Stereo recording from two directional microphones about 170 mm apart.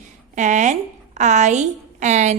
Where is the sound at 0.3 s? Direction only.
45° right (ahead or behind).